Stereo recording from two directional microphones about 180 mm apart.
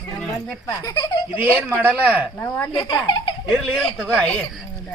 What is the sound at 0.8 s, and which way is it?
Speech, 20° left (ahead or behind).